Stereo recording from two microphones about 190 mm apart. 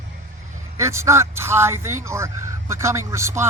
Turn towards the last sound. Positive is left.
turn(degrees=-15)  # may be behind; listen again after turning